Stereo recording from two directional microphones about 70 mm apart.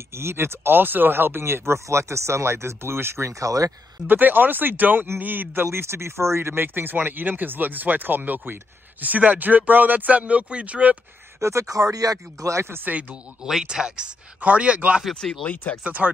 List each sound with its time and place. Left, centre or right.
0.1 s speech: right
3.3 s speech: right
4.1 s speech: right
11.3 s speech: right
12.9 s speech: centre
15.1 s speech: centre
15.4 s speech: centre
15.8 s speech: centre